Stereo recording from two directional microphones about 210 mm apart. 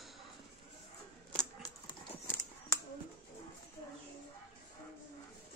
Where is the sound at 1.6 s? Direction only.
20° left (ahead or behind).